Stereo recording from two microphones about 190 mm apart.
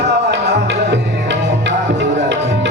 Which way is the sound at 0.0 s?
65° right (ahead or behind).